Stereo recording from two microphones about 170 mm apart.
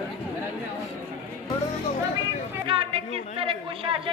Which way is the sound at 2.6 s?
30° right (ahead or behind).